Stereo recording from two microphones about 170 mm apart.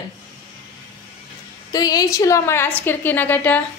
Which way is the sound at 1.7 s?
20° left (ahead or behind).